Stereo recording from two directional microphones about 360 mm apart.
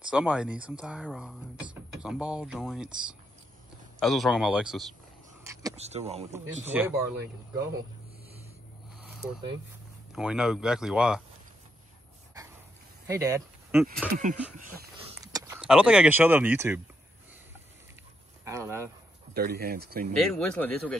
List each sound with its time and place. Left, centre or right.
0.1 s speech: centre
4.0 s speech: centre
6.3 s speech: centre
9.0 s a sound: centre
10.1 s speech: centre
13.0 s speech: centre
14.1 s speech: right
15.3 s speech: centre
18.4 s speech: centre
19.3 s speech: right
20.2 s speech: centre